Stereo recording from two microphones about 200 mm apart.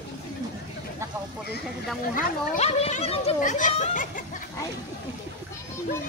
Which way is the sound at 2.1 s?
40° left (ahead or behind).